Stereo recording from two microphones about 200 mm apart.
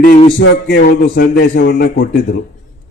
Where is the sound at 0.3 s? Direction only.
60° left (ahead or behind).